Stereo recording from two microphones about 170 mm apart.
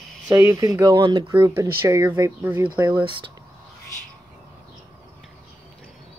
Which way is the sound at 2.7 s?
25° right (ahead or behind).